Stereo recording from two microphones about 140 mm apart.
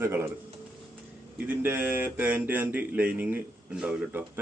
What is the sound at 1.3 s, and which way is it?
Speech, 10° right (ahead or behind).